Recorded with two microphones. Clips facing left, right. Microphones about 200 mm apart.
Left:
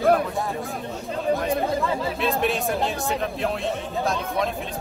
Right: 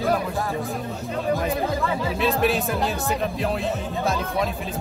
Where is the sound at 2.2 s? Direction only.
Centre (ahead or behind).